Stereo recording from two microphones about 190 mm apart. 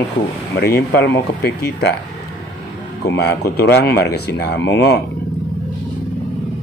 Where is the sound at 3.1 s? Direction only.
60° left (ahead or behind).